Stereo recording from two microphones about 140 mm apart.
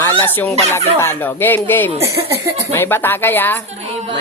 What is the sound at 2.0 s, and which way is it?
Speech, 20° right (ahead or behind).